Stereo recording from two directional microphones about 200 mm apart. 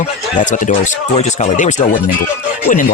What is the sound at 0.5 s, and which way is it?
Speech, 35° left (ahead or behind).